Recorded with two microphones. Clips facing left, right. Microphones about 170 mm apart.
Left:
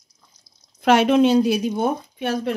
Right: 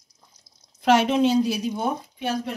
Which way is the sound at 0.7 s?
55° left (ahead or behind).